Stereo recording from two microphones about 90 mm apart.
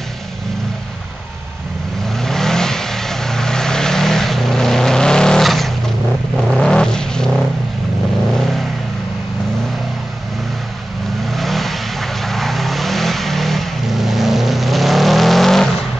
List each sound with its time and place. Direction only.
2.1 s vehicle: 5° left (ahead or behind)
11.3 s vehicle: centre (ahead or behind)